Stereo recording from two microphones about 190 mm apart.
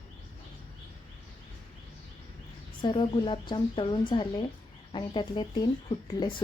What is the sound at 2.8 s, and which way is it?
A woman's voice, 25° left (ahead or behind).